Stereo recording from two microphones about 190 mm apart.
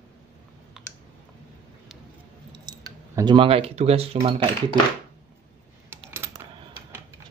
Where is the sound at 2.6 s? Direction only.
20° right (ahead or behind).